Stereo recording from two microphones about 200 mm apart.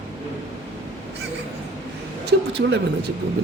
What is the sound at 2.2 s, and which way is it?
Speech, 65° right (ahead or behind).